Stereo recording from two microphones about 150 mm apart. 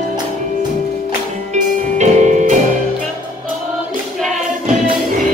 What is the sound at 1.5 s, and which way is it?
Music, 50° right (ahead or behind).